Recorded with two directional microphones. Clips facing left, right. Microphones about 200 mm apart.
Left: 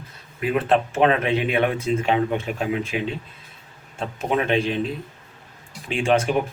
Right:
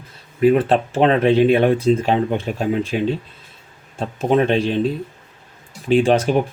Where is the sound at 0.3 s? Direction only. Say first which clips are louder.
Right 6 dB; 30° right (ahead or behind).